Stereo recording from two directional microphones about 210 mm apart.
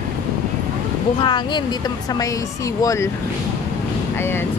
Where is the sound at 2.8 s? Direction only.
15° left (ahead or behind).